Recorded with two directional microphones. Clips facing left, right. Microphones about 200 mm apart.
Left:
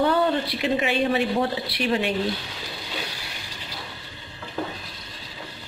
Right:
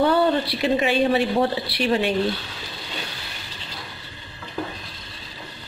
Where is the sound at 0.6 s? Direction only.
35° right (ahead or behind).